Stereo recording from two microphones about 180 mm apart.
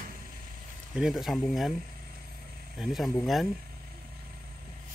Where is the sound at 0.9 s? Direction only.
5° right (ahead or behind).